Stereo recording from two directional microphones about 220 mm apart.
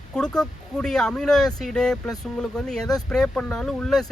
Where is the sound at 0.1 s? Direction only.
5° left (ahead or behind).